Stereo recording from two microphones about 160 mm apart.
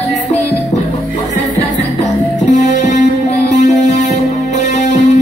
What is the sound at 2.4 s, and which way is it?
Music, 50° left (ahead or behind).